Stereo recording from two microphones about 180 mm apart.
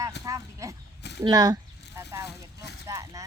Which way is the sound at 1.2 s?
20° right (ahead or behind).